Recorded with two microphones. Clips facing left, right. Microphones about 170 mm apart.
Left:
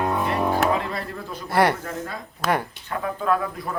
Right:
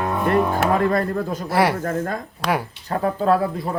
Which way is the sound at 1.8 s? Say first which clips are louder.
Right 8 dB; 50° right (ahead or behind).